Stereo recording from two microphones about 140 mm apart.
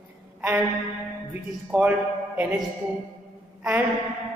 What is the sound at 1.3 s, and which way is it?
Speech, 10° right (ahead or behind).